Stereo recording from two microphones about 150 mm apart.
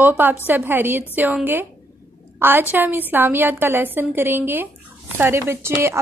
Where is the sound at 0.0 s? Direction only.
15° right (ahead or behind).